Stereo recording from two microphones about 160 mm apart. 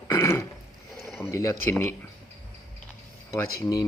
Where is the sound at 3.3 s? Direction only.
25° left (ahead or behind).